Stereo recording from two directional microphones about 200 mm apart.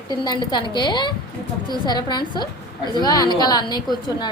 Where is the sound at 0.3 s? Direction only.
20° left (ahead or behind).